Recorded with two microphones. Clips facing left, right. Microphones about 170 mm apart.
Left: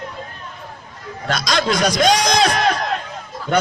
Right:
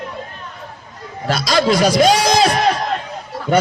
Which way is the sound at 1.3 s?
5° right (ahead or behind).